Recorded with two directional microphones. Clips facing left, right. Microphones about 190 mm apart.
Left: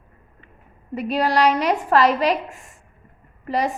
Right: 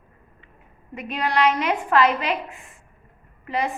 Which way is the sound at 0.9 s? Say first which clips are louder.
Left 4 dB; 35° left (ahead or behind).